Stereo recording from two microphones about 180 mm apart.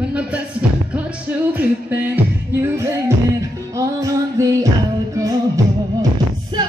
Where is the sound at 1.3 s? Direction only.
10° right (ahead or behind).